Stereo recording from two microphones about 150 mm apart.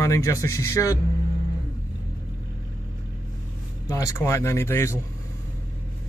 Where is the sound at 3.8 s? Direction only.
20° left (ahead or behind).